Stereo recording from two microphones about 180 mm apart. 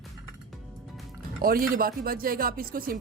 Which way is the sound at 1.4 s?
55° right (ahead or behind).